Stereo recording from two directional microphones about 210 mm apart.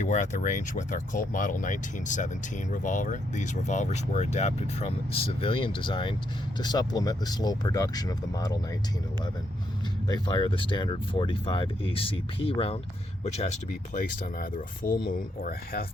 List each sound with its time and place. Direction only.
0.0 s speech: 35° left (ahead or behind); by 8.5 s 20° left (ahead or behind)
10.1 s speech: 20° left (ahead or behind); by 15.9 s 45° left (ahead or behind)